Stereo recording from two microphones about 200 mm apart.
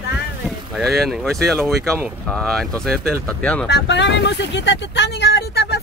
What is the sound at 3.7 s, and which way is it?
Speech, 60° left (ahead or behind).